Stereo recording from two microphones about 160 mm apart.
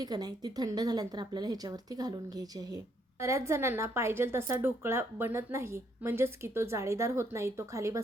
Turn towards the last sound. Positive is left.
turn(degrees=-20)  # may be behind; listen again after turning